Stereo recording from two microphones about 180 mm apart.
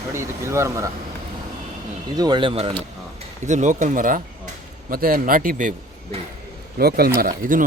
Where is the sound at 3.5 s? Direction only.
45° right (ahead or behind).